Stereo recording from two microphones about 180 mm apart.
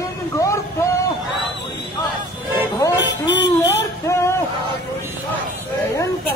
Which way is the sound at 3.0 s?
75° left (ahead or behind).